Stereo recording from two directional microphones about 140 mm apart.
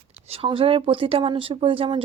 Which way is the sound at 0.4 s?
40° right (ahead or behind).